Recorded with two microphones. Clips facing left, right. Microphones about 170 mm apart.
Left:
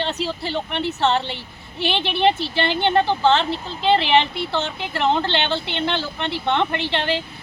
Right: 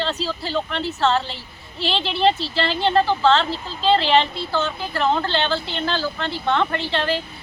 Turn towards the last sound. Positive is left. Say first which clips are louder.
# even
turn(degrees=20)  # may be behind; listen again after turning